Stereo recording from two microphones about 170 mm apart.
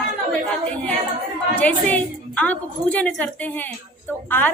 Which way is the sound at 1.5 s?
10° left (ahead or behind).